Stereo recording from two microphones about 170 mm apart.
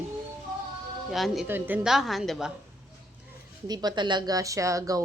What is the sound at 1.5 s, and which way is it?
A woman's voice, 10° right (ahead or behind).